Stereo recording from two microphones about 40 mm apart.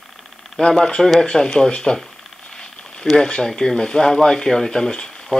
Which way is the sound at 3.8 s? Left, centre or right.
Centre.